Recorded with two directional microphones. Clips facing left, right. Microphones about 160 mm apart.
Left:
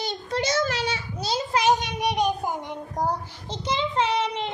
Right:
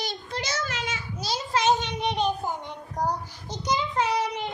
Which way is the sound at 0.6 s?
35° left (ahead or behind).